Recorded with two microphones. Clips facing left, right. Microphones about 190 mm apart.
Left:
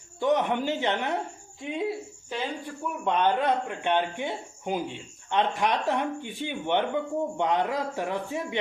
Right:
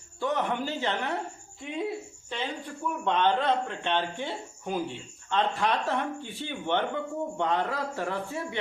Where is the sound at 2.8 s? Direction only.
10° left (ahead or behind).